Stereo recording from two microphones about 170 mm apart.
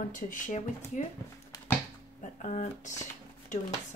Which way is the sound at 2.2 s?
45° left (ahead or behind).